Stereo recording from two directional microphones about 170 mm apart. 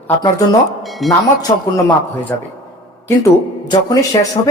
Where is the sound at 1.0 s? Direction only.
Centre (ahead or behind).